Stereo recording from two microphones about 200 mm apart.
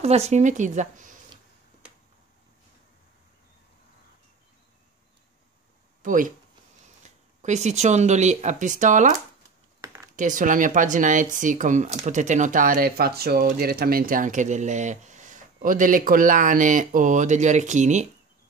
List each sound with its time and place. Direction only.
0.0 s speech: 30° right (ahead or behind)
6.0 s speech: 40° right (ahead or behind)
7.4 s speech: 35° right (ahead or behind)
9.8 s a sound: 15° right (ahead or behind)
10.1 s speech: 40° right (ahead or behind)